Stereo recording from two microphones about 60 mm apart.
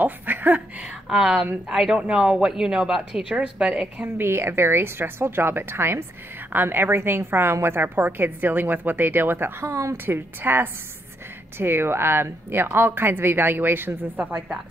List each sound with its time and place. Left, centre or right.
0.0 s a sound: right
1.0 s a woman's voice: centre
4.0 s a woman's voice: right
10.0 s a woman's voice: right